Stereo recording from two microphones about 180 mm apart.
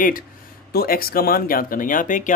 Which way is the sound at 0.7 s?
55° left (ahead or behind).